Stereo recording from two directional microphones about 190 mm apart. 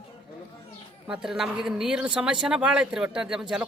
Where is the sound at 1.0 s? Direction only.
5° right (ahead or behind).